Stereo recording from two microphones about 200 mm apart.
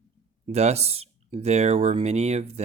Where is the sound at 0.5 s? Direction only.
30° right (ahead or behind).